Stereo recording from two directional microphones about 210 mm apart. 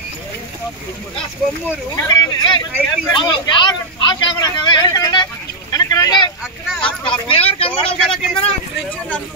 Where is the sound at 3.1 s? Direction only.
20° left (ahead or behind).